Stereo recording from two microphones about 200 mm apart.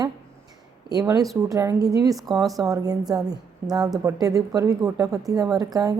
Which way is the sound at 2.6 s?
20° right (ahead or behind).